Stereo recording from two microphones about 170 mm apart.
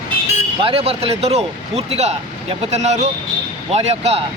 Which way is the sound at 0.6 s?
35° right (ahead or behind).